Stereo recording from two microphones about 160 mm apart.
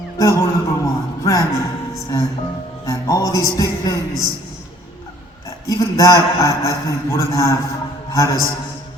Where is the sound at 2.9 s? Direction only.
20° left (ahead or behind).